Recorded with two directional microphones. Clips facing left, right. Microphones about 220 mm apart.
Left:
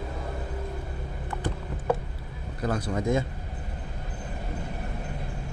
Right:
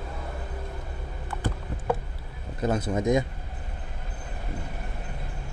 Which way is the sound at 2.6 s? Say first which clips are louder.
Right 3 dB; 20° right (ahead or behind).